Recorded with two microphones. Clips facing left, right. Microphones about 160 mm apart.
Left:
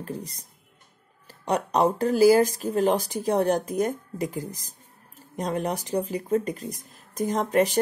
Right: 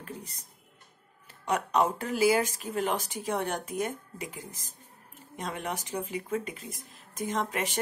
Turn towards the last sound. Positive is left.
turn(degrees=40)  # may be behind; listen again after turning